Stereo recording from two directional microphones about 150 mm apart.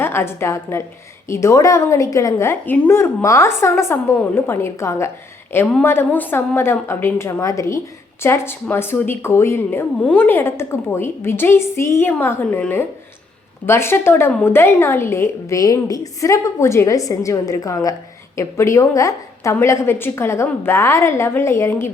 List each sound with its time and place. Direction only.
0.0 s a woman's voice: 15° left (ahead or behind)